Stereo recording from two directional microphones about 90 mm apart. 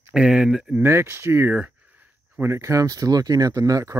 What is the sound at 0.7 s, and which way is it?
Speech, 25° right (ahead or behind).